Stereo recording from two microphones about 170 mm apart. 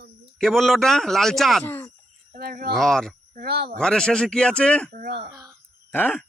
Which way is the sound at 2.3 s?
60° right (ahead or behind).